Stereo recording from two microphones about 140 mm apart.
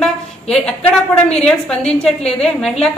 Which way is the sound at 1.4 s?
5° left (ahead or behind).